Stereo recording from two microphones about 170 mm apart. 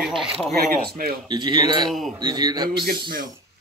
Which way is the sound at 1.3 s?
25° right (ahead or behind).